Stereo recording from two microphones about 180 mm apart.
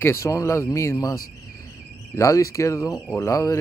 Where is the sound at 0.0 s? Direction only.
15° left (ahead or behind).